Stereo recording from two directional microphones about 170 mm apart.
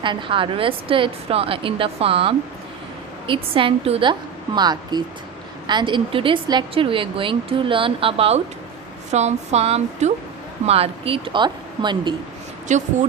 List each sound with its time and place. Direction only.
0.0 s a woman's voice: 30° right (ahead or behind)
12.6 s speech: 45° right (ahead or behind)